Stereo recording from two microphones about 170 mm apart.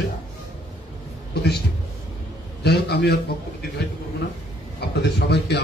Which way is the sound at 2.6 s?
75° left (ahead or behind).